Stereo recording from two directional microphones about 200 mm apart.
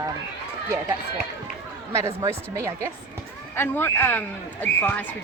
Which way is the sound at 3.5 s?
10° left (ahead or behind).